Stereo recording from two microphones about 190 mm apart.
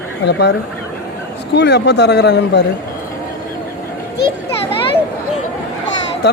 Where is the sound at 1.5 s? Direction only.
65° left (ahead or behind).